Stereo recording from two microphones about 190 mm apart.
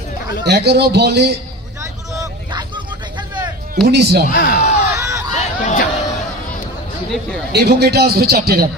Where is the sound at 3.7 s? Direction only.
55° right (ahead or behind).